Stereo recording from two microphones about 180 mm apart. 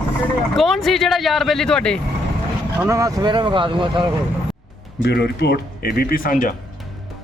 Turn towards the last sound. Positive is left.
turn(degrees=55)  # may be behind; listen again after turning